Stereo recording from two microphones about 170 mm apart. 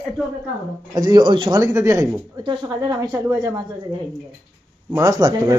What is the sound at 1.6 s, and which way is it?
Speech, 15° right (ahead or behind).